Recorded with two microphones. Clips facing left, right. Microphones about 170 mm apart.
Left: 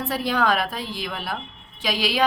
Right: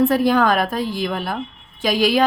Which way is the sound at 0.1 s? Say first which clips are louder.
Right 6 dB; 50° right (ahead or behind).